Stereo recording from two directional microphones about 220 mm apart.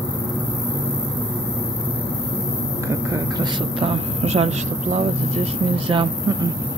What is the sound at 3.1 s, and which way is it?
Speech, 20° right (ahead or behind).